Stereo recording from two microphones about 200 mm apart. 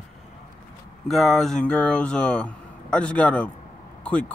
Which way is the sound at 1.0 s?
Centre (ahead or behind).